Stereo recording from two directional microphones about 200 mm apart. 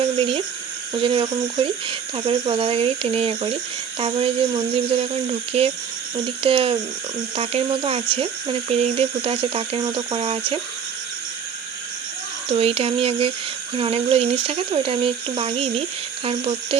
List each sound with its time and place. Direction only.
0.0 s a sound: 25° right (ahead or behind)
0.9 s speech: 25° right (ahead or behind)
12.5 s speech: 30° right (ahead or behind)